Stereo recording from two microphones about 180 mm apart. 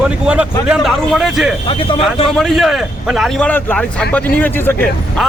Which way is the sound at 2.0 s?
Centre (ahead or behind).